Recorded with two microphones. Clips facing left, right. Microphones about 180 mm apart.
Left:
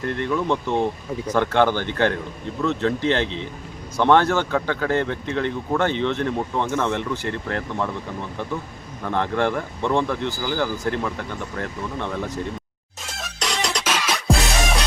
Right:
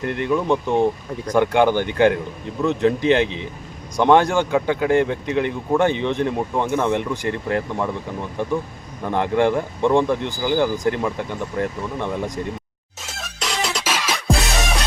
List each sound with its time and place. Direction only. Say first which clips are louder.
0.1 s speech: right 3 dB; 15° right (ahead or behind)
13.1 s music: right 1 dB; centre (ahead or behind)